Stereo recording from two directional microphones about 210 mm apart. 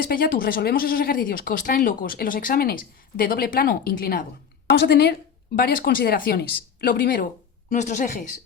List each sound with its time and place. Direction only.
0.0 s a woman's voice: 45° left (ahead or behind)